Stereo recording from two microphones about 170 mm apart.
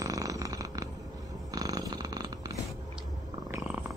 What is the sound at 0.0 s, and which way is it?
Purr, 20° right (ahead or behind).